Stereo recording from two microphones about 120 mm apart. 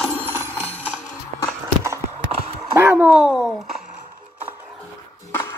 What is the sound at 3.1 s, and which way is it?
Speech, 5° right (ahead or behind).